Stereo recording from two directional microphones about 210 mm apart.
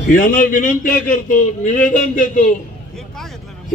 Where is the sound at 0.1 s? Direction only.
40° left (ahead or behind).